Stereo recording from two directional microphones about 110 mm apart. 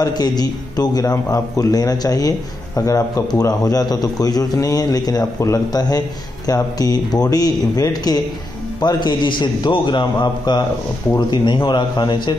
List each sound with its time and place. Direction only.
0.0 s a man's voice: 35° left (ahead or behind)